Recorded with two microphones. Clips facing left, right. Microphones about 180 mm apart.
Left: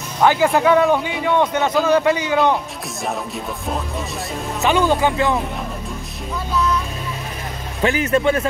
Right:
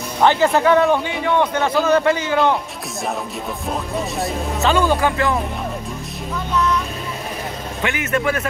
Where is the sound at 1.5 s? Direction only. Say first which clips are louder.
Even; 20° left (ahead or behind).